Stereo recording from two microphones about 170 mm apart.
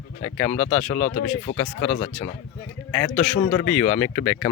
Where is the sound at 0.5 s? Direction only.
40° left (ahead or behind).